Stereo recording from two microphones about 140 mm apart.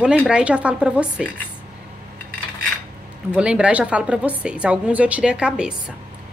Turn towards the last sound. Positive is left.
turn(degrees=-5)  # may be behind; listen again after turning